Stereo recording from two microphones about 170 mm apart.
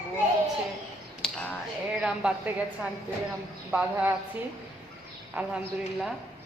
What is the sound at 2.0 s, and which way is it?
Speech, 5° right (ahead or behind).